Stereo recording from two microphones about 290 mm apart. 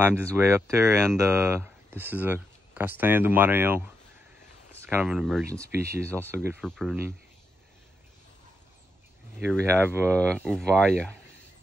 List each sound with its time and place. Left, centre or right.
0.0 s speech: centre
9.6 s speech: centre
10.0 s speech: centre